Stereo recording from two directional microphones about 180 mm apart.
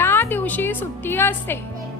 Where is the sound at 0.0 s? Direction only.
10° left (ahead or behind).